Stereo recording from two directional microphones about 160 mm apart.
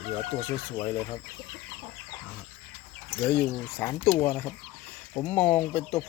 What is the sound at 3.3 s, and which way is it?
Speech, 10° left (ahead or behind).